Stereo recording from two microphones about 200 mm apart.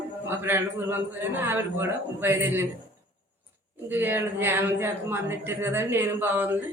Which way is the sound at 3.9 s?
10° right (ahead or behind).